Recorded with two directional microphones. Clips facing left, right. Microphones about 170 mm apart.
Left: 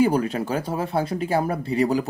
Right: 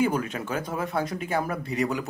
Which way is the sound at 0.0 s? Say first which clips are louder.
Left 5 dB; 35° left (ahead or behind).